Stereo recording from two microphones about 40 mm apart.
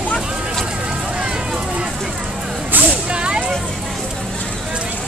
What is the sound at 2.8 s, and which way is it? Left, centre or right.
Vehicle, right.